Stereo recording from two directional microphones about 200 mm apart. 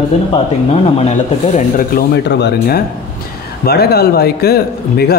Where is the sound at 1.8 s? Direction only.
50° left (ahead or behind).